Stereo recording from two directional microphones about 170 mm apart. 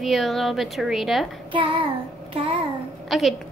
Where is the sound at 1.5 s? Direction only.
30° right (ahead or behind).